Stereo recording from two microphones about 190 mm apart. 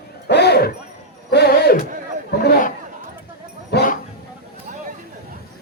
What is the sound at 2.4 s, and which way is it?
Chatter, 50° left (ahead or behind).